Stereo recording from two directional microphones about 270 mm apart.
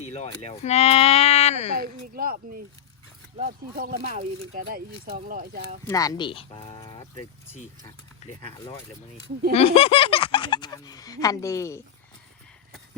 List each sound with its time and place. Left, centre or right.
0.0 s speech: left
1.7 s speech: right
5.8 s speech: centre